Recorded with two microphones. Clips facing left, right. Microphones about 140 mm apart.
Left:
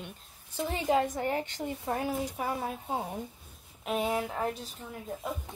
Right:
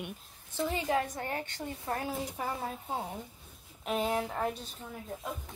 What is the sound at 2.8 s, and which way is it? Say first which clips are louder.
Speech: left 3 dB; 15° left (ahead or behind).